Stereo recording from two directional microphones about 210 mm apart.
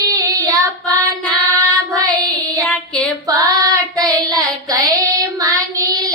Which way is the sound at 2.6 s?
5° left (ahead or behind).